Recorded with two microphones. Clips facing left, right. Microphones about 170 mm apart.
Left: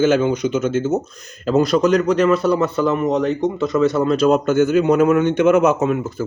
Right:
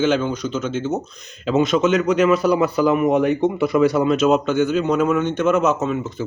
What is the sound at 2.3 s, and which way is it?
Speech, 30° left (ahead or behind).